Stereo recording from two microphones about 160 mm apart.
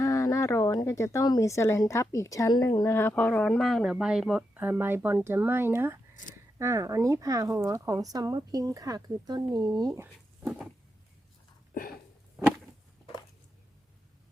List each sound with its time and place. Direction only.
0.0 s speech: 20° left (ahead or behind); by 9.9 s 25° right (ahead or behind)
9.9 s speech: 15° right (ahead or behind)
11.7 s a sound: 60° left (ahead or behind)